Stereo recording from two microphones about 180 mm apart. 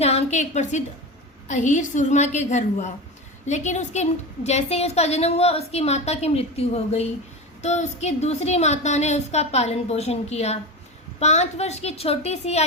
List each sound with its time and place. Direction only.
0.0 s a woman's voice: 40° left (ahead or behind)